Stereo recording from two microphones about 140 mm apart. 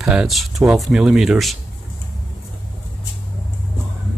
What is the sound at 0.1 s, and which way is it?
Speech, 5° right (ahead or behind).